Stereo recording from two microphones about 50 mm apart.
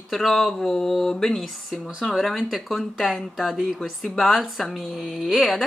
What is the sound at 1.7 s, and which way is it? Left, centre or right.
Speech, centre.